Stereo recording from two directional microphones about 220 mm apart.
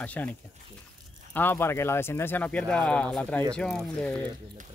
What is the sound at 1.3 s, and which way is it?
Speech, 10° left (ahead or behind).